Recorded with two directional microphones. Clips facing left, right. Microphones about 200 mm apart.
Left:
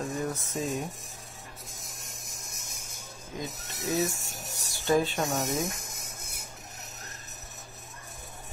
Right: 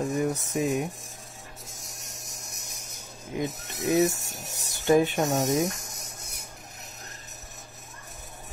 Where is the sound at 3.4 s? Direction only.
15° right (ahead or behind).